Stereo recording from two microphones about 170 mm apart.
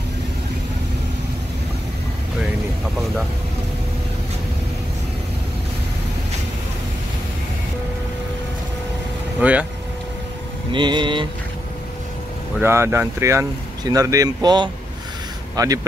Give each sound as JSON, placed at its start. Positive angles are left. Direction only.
{"t": 9.4, "sound": "speech", "side_deg": -10}
{"t": 10.7, "sound": "vehicle", "side_deg": -25}
{"t": 12.5, "sound": "speech", "side_deg": -15}
{"t": 15.5, "sound": "vehicle", "side_deg": -20}